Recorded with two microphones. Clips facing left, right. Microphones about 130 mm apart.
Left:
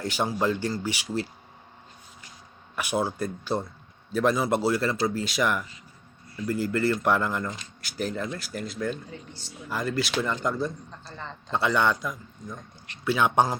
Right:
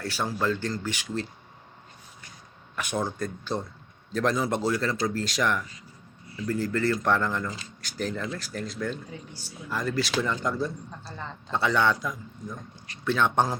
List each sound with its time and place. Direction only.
0.0 s speech: 15° left (ahead or behind)
2.7 s speech: 5° left (ahead or behind)
9.0 s speech: 10° right (ahead or behind)
9.6 s speech: centre (ahead or behind)